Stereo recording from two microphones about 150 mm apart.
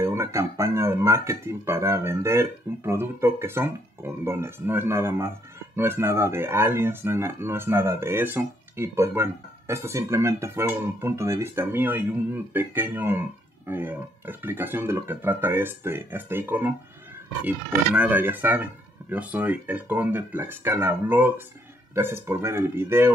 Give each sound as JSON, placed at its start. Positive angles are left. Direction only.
{"t": 0.0, "sound": "speech", "side_deg": -20}